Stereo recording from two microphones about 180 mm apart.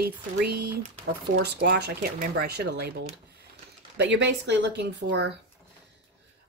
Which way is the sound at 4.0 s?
75° right (ahead or behind).